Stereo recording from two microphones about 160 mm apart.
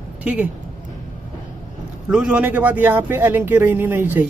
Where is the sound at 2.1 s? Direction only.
5° right (ahead or behind).